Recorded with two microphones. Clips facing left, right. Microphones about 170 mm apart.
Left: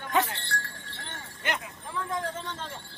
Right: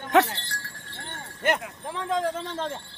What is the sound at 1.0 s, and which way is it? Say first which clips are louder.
Wind chime: right 8 dB; 55° right (ahead or behind).